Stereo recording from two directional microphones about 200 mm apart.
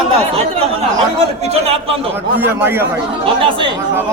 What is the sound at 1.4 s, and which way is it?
Speech, 30° right (ahead or behind).